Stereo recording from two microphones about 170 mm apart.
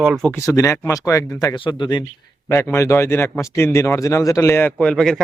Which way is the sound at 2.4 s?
15° left (ahead or behind).